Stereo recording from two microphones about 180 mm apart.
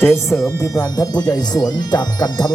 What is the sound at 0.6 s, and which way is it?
Speech, 20° left (ahead or behind).